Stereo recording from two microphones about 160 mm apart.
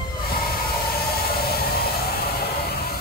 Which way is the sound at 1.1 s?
75° left (ahead or behind).